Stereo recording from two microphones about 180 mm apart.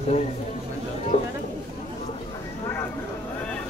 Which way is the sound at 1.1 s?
35° left (ahead or behind).